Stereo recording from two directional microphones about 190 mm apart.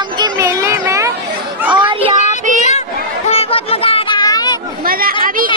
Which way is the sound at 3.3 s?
30° left (ahead or behind).